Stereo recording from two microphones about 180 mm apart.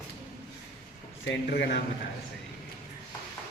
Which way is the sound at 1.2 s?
60° left (ahead or behind).